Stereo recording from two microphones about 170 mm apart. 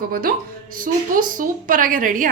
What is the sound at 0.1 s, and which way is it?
A woman's voice, 60° right (ahead or behind).